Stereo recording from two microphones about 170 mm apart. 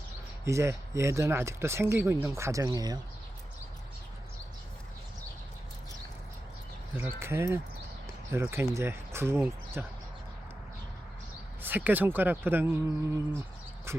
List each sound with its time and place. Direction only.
0.4 s speech: 15° right (ahead or behind)
6.9 s speech: 15° right (ahead or behind)
11.6 s speech: 10° right (ahead or behind)